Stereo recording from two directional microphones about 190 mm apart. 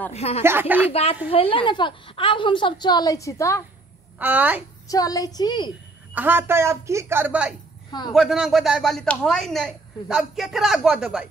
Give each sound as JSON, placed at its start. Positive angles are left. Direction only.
{"t": 0.1, "sound": "speech", "side_deg": 35}
{"t": 0.4, "sound": "speech", "side_deg": -10}
{"t": 1.3, "sound": "a woman's voice", "side_deg": 30}
{"t": 4.2, "sound": "speech", "side_deg": -10}
{"t": 4.8, "sound": "a woman's voice", "side_deg": 20}
{"t": 6.1, "sound": "speech", "side_deg": -10}